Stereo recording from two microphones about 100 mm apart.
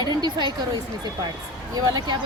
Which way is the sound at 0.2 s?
45° right (ahead or behind).